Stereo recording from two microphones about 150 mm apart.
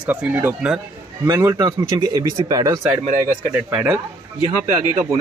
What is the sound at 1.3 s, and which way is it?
Speech, 25° right (ahead or behind).